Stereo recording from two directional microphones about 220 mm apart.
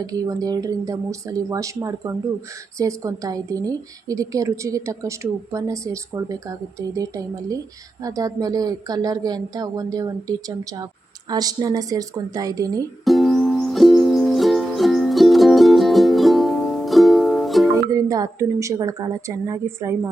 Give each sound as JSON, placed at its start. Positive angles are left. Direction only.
{"t": 0.0, "sound": "a woman's voice", "side_deg": -15}
{"t": 13.1, "sound": "music", "side_deg": 0}
{"t": 17.7, "sound": "a woman's voice", "side_deg": -15}